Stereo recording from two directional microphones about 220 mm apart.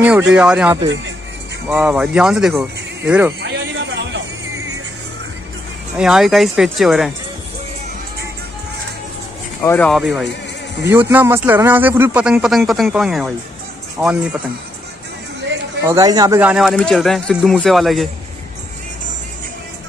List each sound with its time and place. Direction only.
0.3 s speech: 5° right (ahead or behind)
3.3 s a sound: 50° right (ahead or behind)
5.9 s speech: centre (ahead or behind)
9.6 s speech: 5° left (ahead or behind)
15.9 s speech: 15° right (ahead or behind); by 18.0 s centre (ahead or behind)